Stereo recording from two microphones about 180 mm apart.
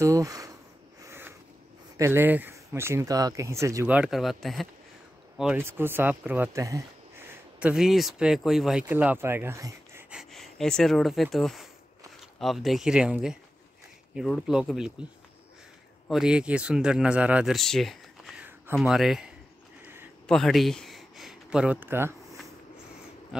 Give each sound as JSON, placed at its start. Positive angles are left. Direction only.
{"t": 0.0, "sound": "speech", "side_deg": -20}
{"t": 1.0, "sound": "a sound", "side_deg": -10}
{"t": 2.0, "sound": "speech", "side_deg": -15}
{"t": 7.6, "sound": "speech", "side_deg": 0}
{"t": 10.1, "sound": "speech", "side_deg": 0}
{"t": 16.1, "sound": "speech", "side_deg": -5}
{"t": 20.2, "sound": "speech", "side_deg": 5}